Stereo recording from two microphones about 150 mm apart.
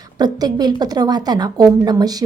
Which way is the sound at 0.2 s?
25° right (ahead or behind).